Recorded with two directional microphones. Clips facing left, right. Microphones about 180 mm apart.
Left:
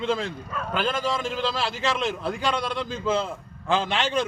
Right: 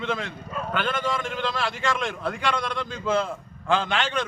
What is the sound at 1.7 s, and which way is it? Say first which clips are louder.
Speech: left 1 dB; 5° left (ahead or behind).